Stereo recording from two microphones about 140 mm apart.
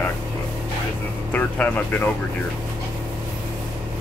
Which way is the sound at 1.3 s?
10° left (ahead or behind).